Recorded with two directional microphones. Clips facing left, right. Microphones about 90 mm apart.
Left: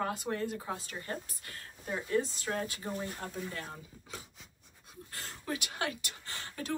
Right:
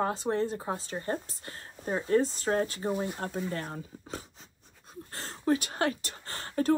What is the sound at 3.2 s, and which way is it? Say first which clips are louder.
Speech: right 6 dB; 50° right (ahead or behind).